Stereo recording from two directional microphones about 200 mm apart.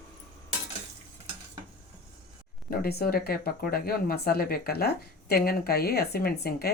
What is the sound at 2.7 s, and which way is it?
Speech, 50° left (ahead or behind).